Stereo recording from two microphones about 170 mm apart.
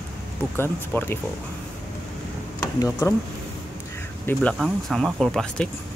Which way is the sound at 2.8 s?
15° left (ahead or behind).